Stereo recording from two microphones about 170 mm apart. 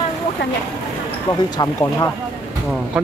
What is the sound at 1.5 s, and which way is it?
Speech, 20° left (ahead or behind).